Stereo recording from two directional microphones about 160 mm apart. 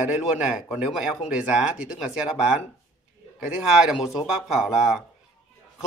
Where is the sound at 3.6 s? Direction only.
5° right (ahead or behind).